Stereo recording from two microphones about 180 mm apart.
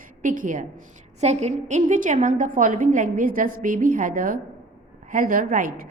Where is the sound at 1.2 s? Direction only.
35° right (ahead or behind).